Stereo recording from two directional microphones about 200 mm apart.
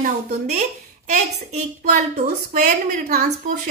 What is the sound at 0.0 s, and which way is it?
A woman's voice, 35° right (ahead or behind).